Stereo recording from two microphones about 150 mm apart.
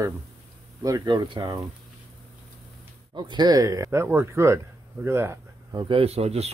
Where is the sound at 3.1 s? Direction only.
30° right (ahead or behind).